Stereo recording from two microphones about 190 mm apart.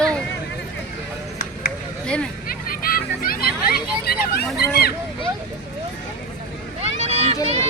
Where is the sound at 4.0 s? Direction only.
55° left (ahead or behind).